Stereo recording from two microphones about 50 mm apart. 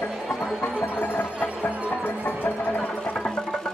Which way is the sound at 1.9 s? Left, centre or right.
Left.